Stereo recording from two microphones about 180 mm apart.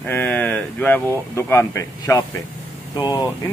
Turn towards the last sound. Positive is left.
turn(degrees=20)  # may be behind; listen again after turning